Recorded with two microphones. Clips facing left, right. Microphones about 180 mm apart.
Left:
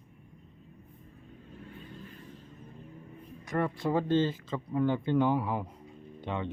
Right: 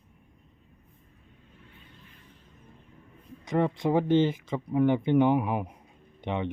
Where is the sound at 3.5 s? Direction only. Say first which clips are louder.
Right 4 dB; 20° right (ahead or behind).